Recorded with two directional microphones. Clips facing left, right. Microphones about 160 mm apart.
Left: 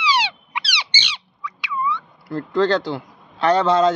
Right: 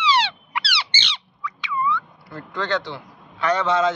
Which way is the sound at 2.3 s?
35° left (ahead or behind).